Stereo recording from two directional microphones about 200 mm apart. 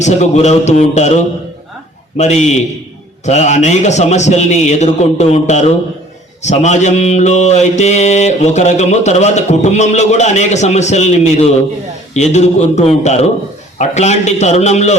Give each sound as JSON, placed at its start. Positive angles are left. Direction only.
{"t": 0.0, "sound": "mantra", "side_deg": 35}